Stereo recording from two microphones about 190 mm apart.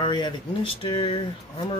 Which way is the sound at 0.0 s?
25° left (ahead or behind).